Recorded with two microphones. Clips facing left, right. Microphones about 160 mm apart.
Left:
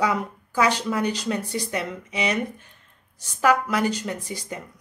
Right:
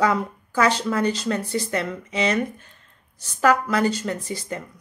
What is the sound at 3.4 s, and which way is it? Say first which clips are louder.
Speech: right 2 dB; 10° left (ahead or behind).